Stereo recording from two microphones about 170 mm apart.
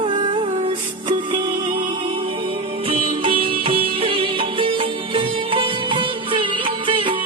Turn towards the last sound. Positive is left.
turn(degrees=-30)  # may be behind; listen again after turning